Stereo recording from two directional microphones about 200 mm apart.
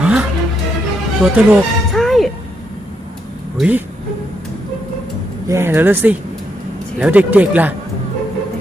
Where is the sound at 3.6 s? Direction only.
10° right (ahead or behind).